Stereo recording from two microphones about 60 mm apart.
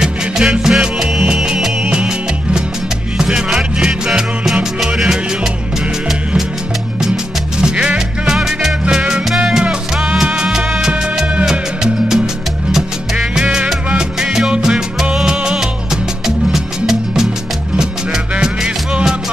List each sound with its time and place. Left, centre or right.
0.0 s music: centre
7.6 s music: centre
8.4 s music: centre
18.3 s music: centre